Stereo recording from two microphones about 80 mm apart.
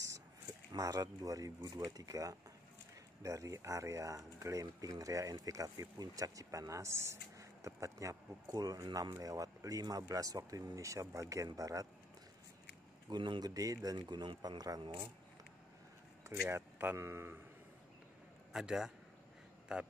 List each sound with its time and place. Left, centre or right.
0.7 s speech: right
13.1 s speech: right
13.5 s speech: right
13.8 s speech: right
16.4 s speech: right
18.5 s a man's voice: centre